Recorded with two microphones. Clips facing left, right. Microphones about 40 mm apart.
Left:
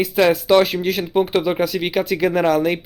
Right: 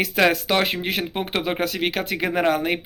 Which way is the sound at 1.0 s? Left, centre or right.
Right.